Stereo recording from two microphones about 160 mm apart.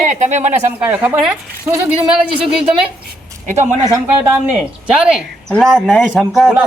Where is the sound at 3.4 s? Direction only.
50° right (ahead or behind).